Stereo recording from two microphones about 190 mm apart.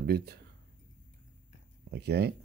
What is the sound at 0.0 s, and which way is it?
Speech, 55° right (ahead or behind).